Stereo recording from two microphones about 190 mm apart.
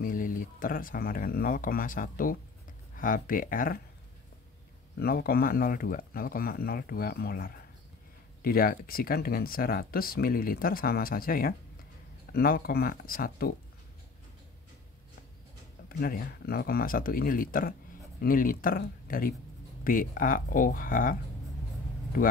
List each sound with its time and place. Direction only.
0.0 s speech: 45° left (ahead or behind)
4.9 s speech: 55° left (ahead or behind)
16.0 s speech: 50° left (ahead or behind)